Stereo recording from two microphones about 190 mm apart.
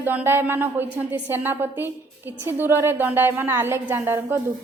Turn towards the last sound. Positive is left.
turn(degrees=-15)  # may be behind; listen again after turning